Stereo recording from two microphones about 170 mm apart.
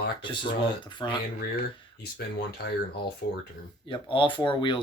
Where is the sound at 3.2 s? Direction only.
75° left (ahead or behind).